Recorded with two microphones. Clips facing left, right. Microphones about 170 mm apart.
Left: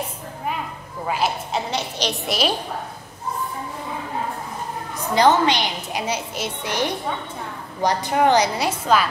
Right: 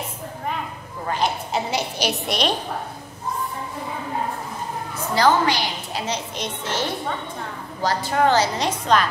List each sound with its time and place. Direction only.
1.0 s a woman's voice: 5° left (ahead or behind)
1.7 s a woman's voice: 10° right (ahead or behind)
4.9 s a woman's voice: 20° left (ahead or behind)